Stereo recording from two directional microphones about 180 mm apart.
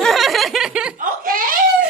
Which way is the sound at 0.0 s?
Centre (ahead or behind).